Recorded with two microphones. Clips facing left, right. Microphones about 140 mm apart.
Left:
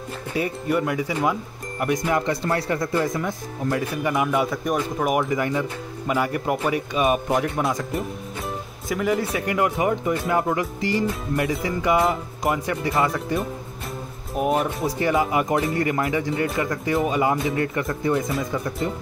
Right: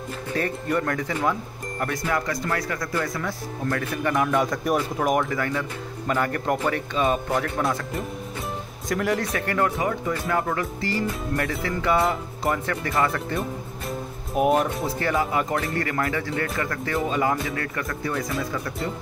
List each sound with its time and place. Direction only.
0.3 s speech: 10° left (ahead or behind)
8.8 s speech: centre (ahead or behind)
14.3 s speech: centre (ahead or behind)
14.9 s speech: 15° left (ahead or behind)